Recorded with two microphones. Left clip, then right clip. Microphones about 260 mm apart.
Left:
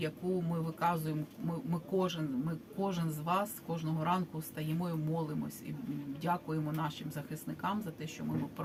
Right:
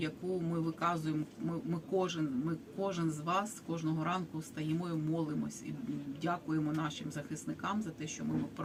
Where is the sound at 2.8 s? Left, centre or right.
Centre.